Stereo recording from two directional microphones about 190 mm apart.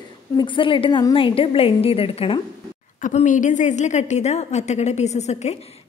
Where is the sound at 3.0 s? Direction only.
40° left (ahead or behind).